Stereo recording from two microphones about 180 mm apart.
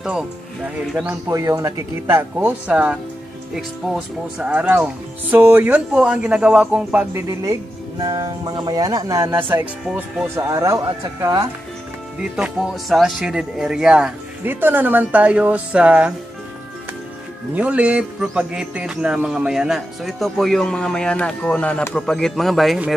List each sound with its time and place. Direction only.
0.0 s speech: 5° right (ahead or behind)
1.3 s speech: 20° right (ahead or behind)
12.2 s speech: centre (ahead or behind)
17.6 s speech: 5° right (ahead or behind)